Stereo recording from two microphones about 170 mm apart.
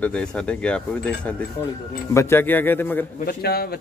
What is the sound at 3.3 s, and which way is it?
Speech, 65° left (ahead or behind).